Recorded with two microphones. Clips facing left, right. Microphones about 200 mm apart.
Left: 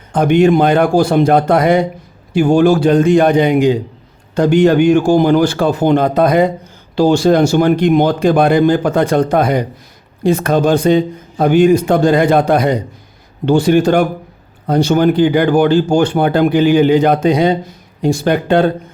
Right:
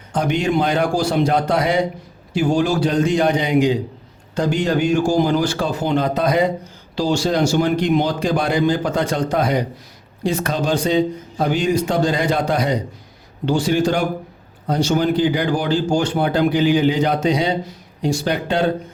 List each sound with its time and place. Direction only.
0.1 s a man's voice: 55° left (ahead or behind)